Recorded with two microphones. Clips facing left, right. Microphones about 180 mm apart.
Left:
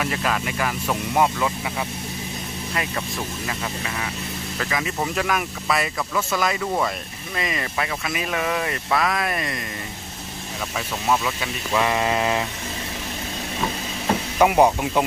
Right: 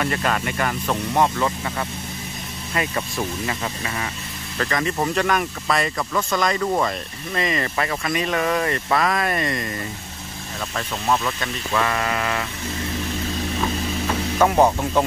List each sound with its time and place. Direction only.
0.0 s speech: 5° left (ahead or behind)
4.6 s speech: 5° left (ahead or behind)
11.1 s speech: 5° left (ahead or behind)
11.7 s mantra: 20° left (ahead or behind)
14.4 s speech: 10° left (ahead or behind)